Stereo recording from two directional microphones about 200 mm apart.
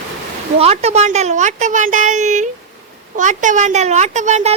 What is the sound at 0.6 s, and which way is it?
A woman's voice, 30° right (ahead or behind).